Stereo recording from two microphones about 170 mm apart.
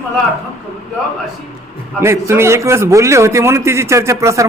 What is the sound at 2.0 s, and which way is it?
A man's voice, 15° right (ahead or behind).